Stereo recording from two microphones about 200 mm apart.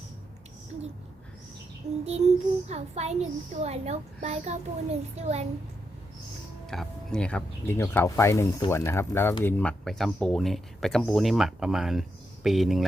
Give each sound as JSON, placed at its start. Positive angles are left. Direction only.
{"t": 2.0, "sound": "a child's voice", "side_deg": -30}
{"t": 6.7, "sound": "speech", "side_deg": 5}